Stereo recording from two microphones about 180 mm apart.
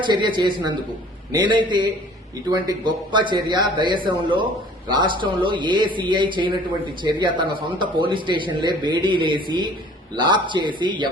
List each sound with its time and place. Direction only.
0.0 s speech: 25° right (ahead or behind)